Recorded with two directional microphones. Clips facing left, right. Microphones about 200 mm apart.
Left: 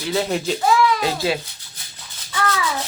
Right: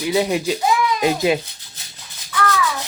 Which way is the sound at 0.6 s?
15° right (ahead or behind).